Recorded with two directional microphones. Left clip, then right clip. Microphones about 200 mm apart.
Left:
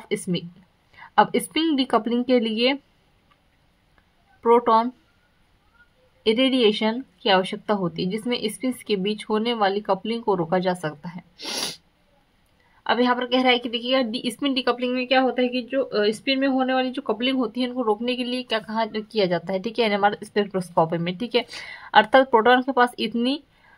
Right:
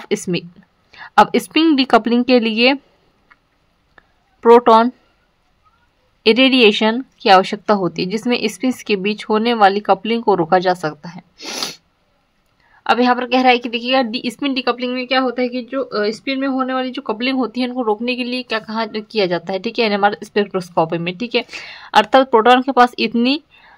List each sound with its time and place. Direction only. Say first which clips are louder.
0.0 s a woman's voice: right 7 dB; 30° right (ahead or behind)
4.4 s speech: right 8 dB; 35° right (ahead or behind)
6.2 s a woman's voice: right 8 dB; 30° right (ahead or behind); by 11.8 s 15° right (ahead or behind)
12.8 s a woman's voice: right 6 dB; 25° right (ahead or behind)